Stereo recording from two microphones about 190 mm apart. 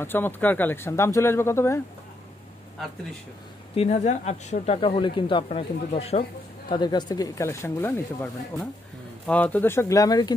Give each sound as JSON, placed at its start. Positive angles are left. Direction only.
{"t": 0.0, "sound": "speech", "side_deg": 10}
{"t": 3.7, "sound": "speech", "side_deg": 35}